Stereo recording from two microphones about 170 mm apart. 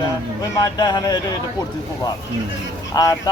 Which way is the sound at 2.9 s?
20° left (ahead or behind).